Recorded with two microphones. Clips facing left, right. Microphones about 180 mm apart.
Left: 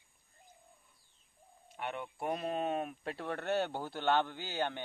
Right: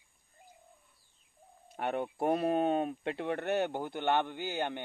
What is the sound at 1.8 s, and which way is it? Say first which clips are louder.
Speech: right 7 dB; 45° right (ahead or behind).